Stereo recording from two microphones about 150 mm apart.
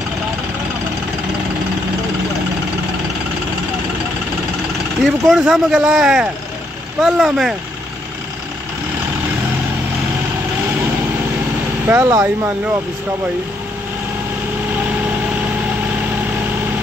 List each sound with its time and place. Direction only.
5.0 s speech: centre (ahead or behind)
11.9 s speech: 15° right (ahead or behind)